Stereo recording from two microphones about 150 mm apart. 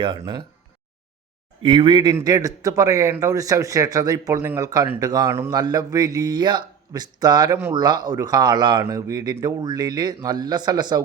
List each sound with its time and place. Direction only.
1.6 s speech: 35° right (ahead or behind)